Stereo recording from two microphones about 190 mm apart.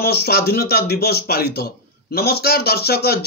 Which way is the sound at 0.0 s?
55° left (ahead or behind).